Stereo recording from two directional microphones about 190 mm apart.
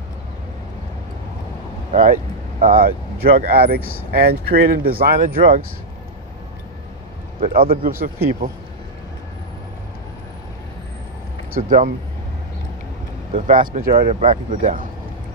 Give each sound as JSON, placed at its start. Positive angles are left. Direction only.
{"t": 1.9, "sound": "speech", "side_deg": -45}
{"t": 7.3, "sound": "speech", "side_deg": -50}
{"t": 11.5, "sound": "speech", "side_deg": -45}
{"t": 13.3, "sound": "speech", "side_deg": -45}